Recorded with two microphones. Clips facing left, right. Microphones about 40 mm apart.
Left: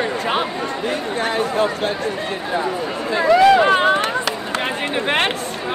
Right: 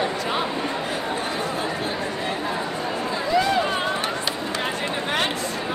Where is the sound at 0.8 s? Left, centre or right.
Left.